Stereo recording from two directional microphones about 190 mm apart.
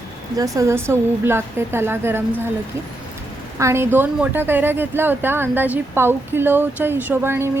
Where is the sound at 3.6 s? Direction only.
15° right (ahead or behind).